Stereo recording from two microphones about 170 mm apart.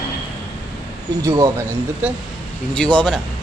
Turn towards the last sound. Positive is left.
turn(degrees=5)  # may be behind; listen again after turning